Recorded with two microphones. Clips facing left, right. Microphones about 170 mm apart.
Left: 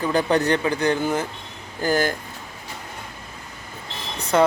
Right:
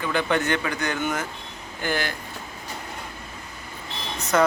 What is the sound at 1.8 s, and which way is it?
Speech, 40° left (ahead or behind).